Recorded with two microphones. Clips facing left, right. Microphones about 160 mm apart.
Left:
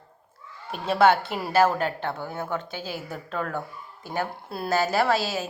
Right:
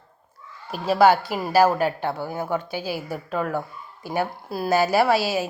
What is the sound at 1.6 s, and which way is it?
A woman's voice, 10° right (ahead or behind).